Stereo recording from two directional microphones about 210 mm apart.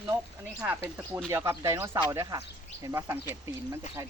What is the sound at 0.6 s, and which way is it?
Fowl, 10° right (ahead or behind).